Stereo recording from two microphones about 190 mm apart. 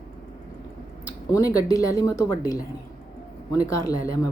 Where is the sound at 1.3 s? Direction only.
15° left (ahead or behind).